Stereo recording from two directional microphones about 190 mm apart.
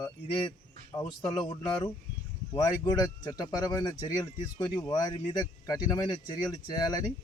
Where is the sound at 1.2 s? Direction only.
25° left (ahead or behind).